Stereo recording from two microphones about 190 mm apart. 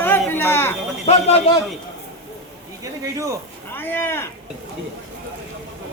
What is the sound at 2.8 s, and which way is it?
Speech, 15° right (ahead or behind).